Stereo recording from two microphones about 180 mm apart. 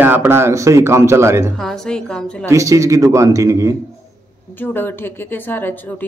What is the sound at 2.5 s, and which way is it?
A man's voice, 15° right (ahead or behind).